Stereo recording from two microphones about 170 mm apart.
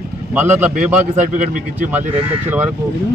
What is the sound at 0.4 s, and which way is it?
Speech, 10° right (ahead or behind).